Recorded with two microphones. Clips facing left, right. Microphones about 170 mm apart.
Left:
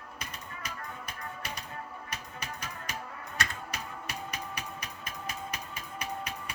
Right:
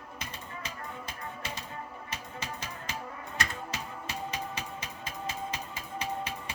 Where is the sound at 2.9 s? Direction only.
25° right (ahead or behind).